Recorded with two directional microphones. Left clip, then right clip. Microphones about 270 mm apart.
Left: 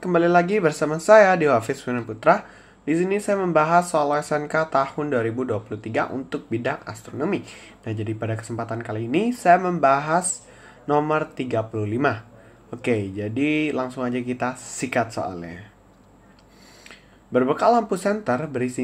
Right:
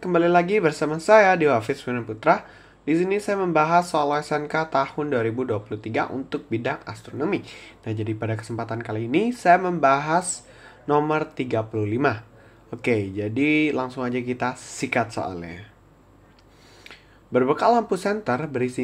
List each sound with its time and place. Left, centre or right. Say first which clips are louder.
0.0 s speech: left 1 dB; centre
16.8 s speech: right 2 dB; centre